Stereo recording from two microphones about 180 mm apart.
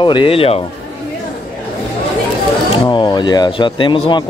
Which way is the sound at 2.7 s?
25° left (ahead or behind).